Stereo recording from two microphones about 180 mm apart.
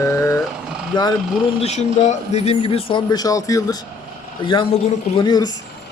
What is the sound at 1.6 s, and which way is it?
Speech, 35° left (ahead or behind).